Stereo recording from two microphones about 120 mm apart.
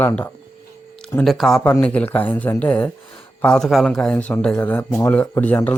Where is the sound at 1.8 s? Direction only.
15° left (ahead or behind).